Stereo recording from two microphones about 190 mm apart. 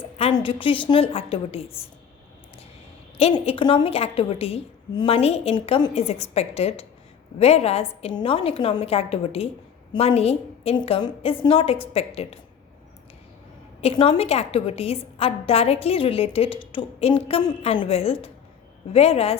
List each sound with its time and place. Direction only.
0.0 s a woman's voice: 30° left (ahead or behind)
3.2 s a woman's voice: 30° left (ahead or behind)
13.8 s a woman's voice: 25° left (ahead or behind)